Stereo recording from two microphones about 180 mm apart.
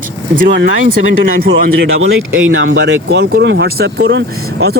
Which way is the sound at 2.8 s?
70° right (ahead or behind).